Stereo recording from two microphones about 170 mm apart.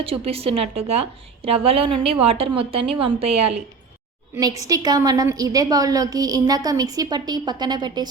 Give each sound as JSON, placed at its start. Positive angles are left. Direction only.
{"t": 0.0, "sound": "a woman's voice", "side_deg": -35}
{"t": 4.6, "sound": "a woman's voice", "side_deg": -20}